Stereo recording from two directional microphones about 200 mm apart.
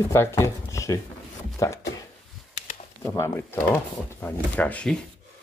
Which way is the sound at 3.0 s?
15° left (ahead or behind).